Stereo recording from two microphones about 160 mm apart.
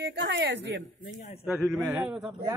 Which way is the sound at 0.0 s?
90° right.